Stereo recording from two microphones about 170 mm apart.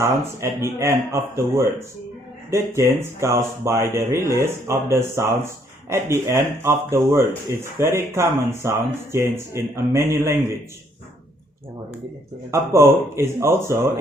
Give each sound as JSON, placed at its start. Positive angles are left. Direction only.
{"t": 0.0, "sound": "speech", "side_deg": -15}
{"t": 12.5, "sound": "speech", "side_deg": -15}